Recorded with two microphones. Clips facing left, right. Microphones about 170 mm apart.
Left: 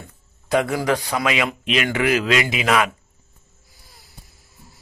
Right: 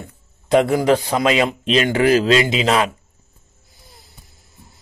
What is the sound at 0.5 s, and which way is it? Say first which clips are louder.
A man's voice: right 5 dB; 25° right (ahead or behind).